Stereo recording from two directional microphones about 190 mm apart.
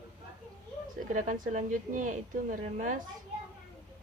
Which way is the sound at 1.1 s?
45° right (ahead or behind).